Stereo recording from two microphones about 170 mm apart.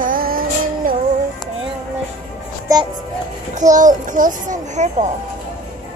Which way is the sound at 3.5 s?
45° right (ahead or behind).